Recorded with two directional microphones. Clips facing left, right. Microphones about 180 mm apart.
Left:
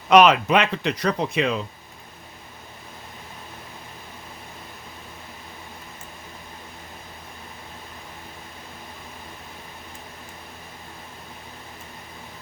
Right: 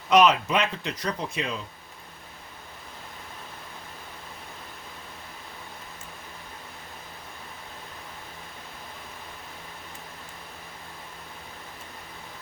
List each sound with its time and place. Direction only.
0.1 s speech: 70° left (ahead or behind)